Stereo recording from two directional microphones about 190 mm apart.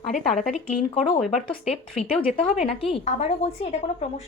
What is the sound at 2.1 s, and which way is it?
Speech, 30° left (ahead or behind).